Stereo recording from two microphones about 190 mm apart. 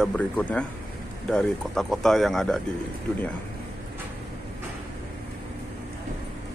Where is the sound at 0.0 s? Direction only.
5° left (ahead or behind).